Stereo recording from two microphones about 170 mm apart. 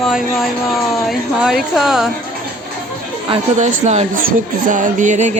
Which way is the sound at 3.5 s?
45° right (ahead or behind).